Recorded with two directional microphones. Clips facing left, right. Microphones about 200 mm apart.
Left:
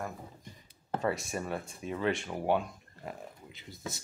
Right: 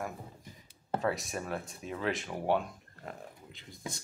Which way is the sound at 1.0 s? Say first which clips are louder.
Left 2 dB; centre (ahead or behind).